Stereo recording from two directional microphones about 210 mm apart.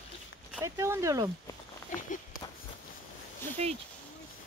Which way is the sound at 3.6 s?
30° right (ahead or behind).